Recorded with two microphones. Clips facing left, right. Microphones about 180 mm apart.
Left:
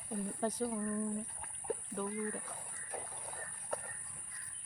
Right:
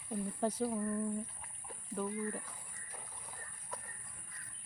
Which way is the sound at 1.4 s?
55° left (ahead or behind).